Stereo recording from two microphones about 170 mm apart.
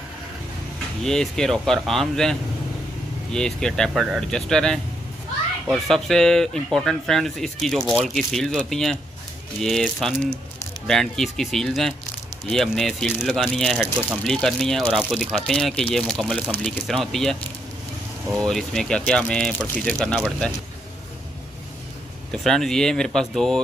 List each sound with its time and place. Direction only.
1.0 s speech: 5° left (ahead or behind)
3.3 s speech: 5° left (ahead or behind)
18.4 s speech: 5° left (ahead or behind)
22.3 s speech: centre (ahead or behind)